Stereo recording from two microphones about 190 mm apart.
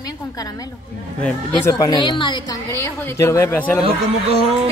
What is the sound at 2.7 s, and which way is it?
A man's voice, 15° left (ahead or behind).